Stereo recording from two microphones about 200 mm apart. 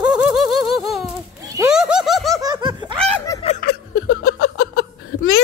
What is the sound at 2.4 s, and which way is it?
Laughter, 20° right (ahead or behind).